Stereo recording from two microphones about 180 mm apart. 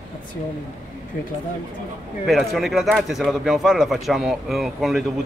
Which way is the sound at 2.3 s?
Centre (ahead or behind).